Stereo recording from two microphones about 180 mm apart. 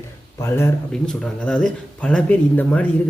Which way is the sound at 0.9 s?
5° left (ahead or behind).